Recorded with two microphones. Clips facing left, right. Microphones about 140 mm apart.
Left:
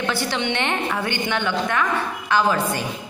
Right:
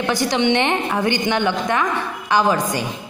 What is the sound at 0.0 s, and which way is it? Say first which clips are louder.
A woman's voice: right 5 dB; 15° right (ahead or behind).